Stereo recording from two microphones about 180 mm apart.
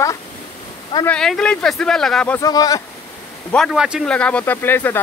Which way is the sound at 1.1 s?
5° left (ahead or behind).